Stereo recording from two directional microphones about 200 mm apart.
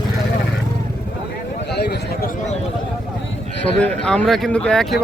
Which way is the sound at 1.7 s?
55° left (ahead or behind).